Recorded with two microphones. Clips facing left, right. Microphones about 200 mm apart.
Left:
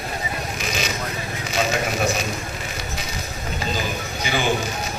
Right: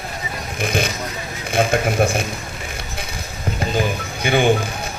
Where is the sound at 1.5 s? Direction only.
55° right (ahead or behind).